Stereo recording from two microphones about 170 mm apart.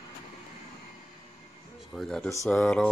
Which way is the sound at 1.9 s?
Centre (ahead or behind).